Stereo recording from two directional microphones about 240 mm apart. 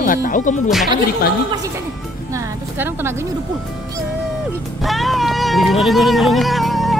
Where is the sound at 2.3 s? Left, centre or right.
Centre.